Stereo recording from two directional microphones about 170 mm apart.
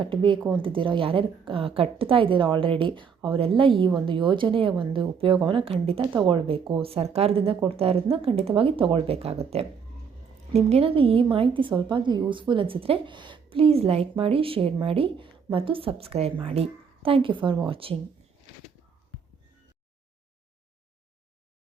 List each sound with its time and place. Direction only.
0.0 s a woman's voice: 30° right (ahead or behind)